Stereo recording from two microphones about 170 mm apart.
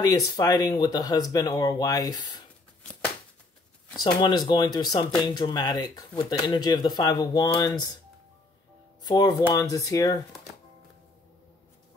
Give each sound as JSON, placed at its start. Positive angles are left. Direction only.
{"t": 0.0, "sound": "speech", "side_deg": 20}
{"t": 4.0, "sound": "speech", "side_deg": 25}
{"t": 9.0, "sound": "speech", "side_deg": 25}